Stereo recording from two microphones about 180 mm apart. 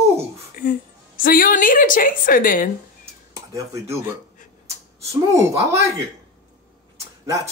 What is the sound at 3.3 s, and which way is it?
Speech, 20° right (ahead or behind).